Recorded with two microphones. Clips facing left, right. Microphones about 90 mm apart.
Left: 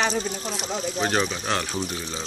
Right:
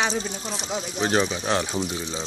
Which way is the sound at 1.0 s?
20° right (ahead or behind).